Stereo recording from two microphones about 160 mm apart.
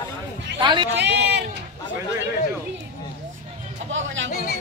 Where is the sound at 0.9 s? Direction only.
90° right.